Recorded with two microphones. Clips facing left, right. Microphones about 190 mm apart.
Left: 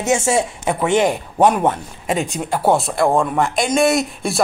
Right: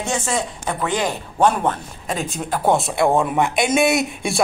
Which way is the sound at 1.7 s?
10° left (ahead or behind).